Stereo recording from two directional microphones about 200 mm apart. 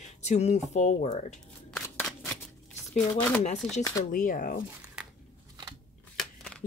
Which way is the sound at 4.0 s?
40° left (ahead or behind).